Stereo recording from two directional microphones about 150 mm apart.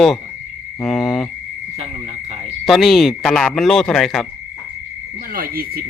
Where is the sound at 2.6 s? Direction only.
Centre (ahead or behind).